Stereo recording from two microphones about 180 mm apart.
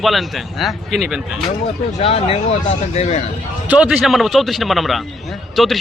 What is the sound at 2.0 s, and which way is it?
Speech, 30° left (ahead or behind).